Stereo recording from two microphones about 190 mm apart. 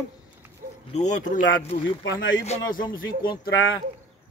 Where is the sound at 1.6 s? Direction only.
30° left (ahead or behind).